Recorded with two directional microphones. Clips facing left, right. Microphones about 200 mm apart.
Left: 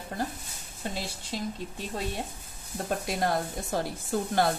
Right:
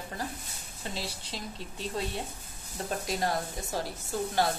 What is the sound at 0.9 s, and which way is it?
A woman's voice, 50° left (ahead or behind).